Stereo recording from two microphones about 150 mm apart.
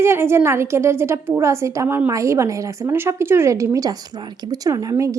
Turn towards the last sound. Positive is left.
turn(degrees=-20)  # may be behind; listen again after turning